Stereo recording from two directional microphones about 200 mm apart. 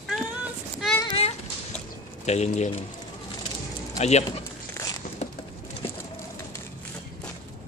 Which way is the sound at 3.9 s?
35° left (ahead or behind).